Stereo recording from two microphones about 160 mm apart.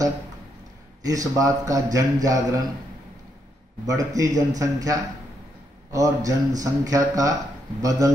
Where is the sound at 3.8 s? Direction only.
20° right (ahead or behind).